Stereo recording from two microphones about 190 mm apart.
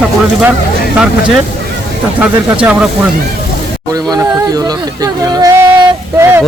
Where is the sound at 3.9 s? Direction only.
20° right (ahead or behind).